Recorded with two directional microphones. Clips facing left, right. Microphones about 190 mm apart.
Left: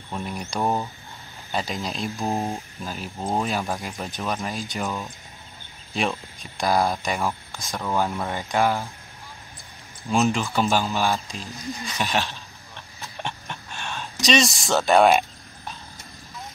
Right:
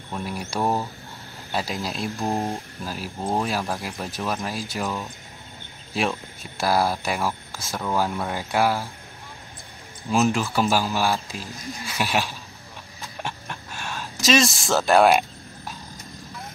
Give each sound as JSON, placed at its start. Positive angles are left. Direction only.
{"t": 0.1, "sound": "speech", "side_deg": -5}
{"t": 10.1, "sound": "speech", "side_deg": 0}
{"t": 13.2, "sound": "a sound", "side_deg": -5}